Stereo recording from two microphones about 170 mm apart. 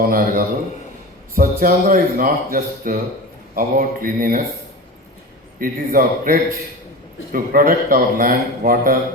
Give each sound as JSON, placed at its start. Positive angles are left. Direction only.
{"t": 0.1, "sound": "a man's voice", "side_deg": -55}
{"t": 5.5, "sound": "a man's voice", "side_deg": -55}